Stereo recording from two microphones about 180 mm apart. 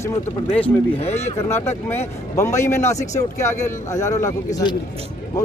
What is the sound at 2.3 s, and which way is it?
Speech, 15° left (ahead or behind).